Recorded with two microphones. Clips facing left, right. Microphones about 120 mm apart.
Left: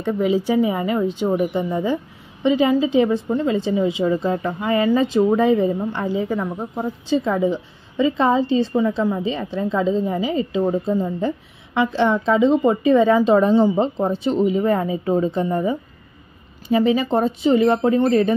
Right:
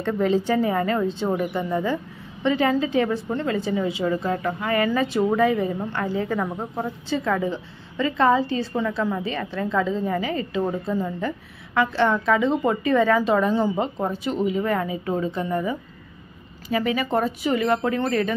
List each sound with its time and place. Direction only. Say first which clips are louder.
0.0 s a woman's voice: left 2 dB; 10° left (ahead or behind)